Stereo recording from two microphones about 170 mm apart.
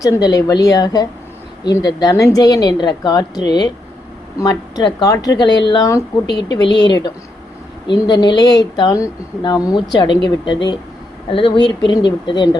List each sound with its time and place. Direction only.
0.0 s a woman's voice: 20° left (ahead or behind)
4.9 s a woman's voice: 20° left (ahead or behind)